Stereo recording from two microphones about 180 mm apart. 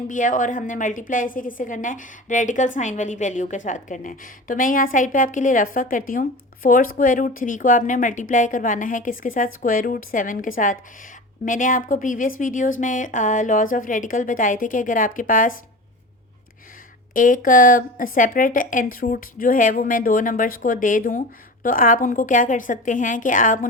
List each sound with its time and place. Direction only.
0.1 s a woman's voice: 45° left (ahead or behind)
17.2 s a woman's voice: 50° left (ahead or behind)